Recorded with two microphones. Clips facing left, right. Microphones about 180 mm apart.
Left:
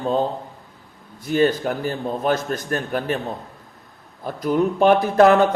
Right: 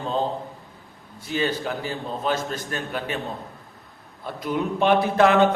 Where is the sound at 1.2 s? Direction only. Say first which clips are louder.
Left 7 dB; 50° left (ahead or behind).